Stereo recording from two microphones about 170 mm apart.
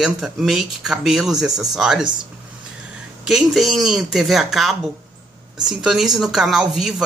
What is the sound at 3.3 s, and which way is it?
Speech, centre (ahead or behind).